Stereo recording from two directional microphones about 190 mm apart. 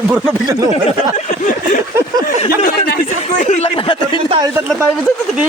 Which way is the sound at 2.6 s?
50° left (ahead or behind).